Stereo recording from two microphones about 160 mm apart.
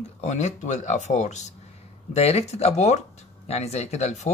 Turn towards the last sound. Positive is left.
turn(degrees=45)  # may be behind; listen again after turning